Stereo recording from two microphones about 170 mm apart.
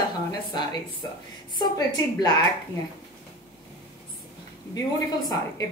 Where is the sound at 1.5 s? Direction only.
25° left (ahead or behind).